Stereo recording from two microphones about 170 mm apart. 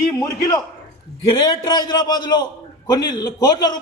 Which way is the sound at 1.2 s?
25° left (ahead or behind).